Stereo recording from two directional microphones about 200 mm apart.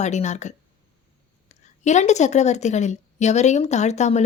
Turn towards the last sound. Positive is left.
turn(degrees=35)  # may be behind; listen again after turning